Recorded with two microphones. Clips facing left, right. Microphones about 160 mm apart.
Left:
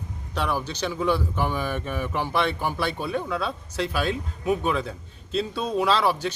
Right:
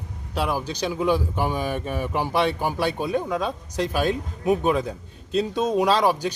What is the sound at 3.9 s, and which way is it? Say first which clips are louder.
Speech: right 4 dB; 45° right (ahead or behind).